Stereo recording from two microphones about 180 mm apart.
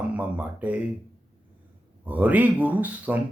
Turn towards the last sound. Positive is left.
turn(degrees=-10)  # may be behind; listen again after turning